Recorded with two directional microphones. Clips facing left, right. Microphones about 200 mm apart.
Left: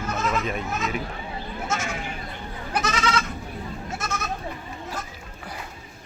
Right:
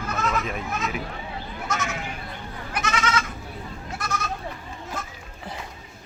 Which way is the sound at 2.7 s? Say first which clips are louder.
Left 1 dB; 35° left (ahead or behind).